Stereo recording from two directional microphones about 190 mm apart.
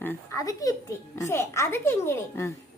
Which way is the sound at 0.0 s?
10° left (ahead or behind).